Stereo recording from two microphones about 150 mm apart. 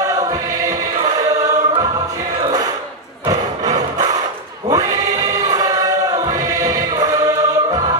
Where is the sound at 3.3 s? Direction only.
25° right (ahead or behind).